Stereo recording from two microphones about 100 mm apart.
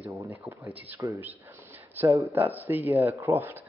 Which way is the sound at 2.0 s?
20° right (ahead or behind).